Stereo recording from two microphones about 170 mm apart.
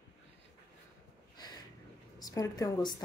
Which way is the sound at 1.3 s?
25° left (ahead or behind).